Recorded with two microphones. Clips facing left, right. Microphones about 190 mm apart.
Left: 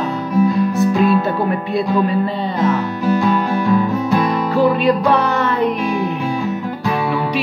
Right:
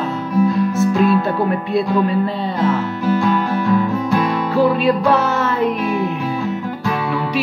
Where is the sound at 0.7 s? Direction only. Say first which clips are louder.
Even; centre (ahead or behind).